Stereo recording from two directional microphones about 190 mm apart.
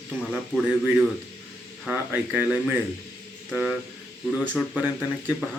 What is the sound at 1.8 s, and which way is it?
Speech, 5° right (ahead or behind).